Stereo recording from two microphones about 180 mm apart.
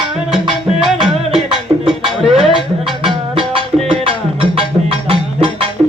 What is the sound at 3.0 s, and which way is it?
Music, 30° right (ahead or behind).